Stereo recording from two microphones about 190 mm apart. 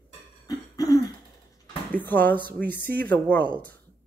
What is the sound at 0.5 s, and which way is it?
Throat clearing, 20° left (ahead or behind).